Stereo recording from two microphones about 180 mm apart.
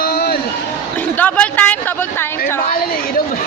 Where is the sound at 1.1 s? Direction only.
10° left (ahead or behind).